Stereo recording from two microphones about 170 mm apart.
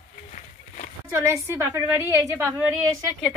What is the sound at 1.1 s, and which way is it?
A woman's voice, 15° right (ahead or behind).